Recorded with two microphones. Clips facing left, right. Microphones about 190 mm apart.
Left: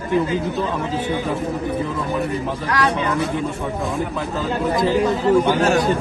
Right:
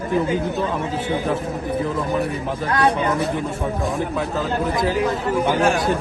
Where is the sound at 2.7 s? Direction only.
30° right (ahead or behind).